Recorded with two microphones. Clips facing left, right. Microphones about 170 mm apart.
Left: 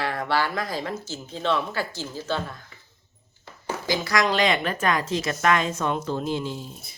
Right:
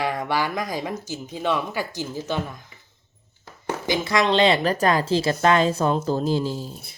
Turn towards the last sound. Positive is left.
turn(degrees=-35)  # may be behind; listen again after turning